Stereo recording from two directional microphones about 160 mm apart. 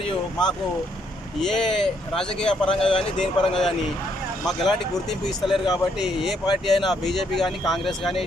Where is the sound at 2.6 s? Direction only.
35° left (ahead or behind).